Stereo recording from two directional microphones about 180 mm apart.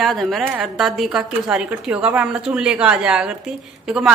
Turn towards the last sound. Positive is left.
turn(degrees=-5)  # may be behind; listen again after turning